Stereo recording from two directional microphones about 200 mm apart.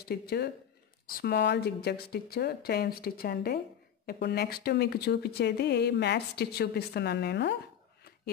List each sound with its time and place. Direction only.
0.0 s a woman's voice: 50° left (ahead or behind)